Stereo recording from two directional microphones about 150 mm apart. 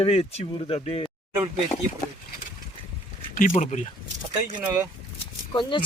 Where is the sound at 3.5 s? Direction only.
50° left (ahead or behind).